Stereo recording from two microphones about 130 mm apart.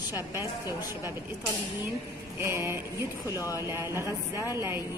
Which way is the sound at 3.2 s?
25° left (ahead or behind).